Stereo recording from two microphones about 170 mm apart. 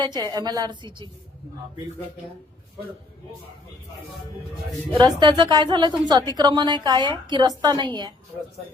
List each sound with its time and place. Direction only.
0.0 s a woman's voice: 25° right (ahead or behind)
4.9 s a woman's voice: 25° right (ahead or behind)